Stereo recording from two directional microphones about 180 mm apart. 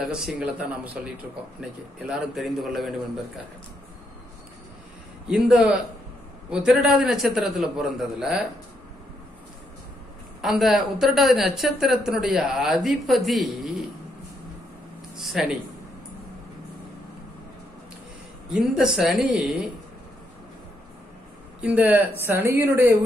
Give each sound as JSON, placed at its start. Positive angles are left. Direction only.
{"t": 0.0, "sound": "a woman's voice", "side_deg": 0}
{"t": 5.3, "sound": "a woman's voice", "side_deg": -5}
{"t": 10.4, "sound": "a woman's voice", "side_deg": 0}
{"t": 15.1, "sound": "a sound", "side_deg": 0}
{"t": 18.5, "sound": "a woman's voice", "side_deg": -5}
{"t": 21.5, "sound": "speech", "side_deg": -10}